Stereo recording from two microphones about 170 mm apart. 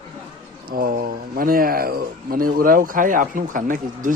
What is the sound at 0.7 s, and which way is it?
Speech, 60° right (ahead or behind).